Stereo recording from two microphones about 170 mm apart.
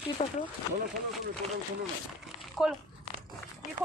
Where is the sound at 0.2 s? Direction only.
45° left (ahead or behind).